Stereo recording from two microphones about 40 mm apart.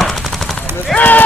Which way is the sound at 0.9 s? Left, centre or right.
Left.